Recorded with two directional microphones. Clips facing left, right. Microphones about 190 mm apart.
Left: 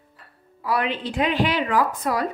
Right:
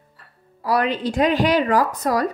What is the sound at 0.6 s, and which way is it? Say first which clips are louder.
A woman's voice: right 4 dB; 40° right (ahead or behind).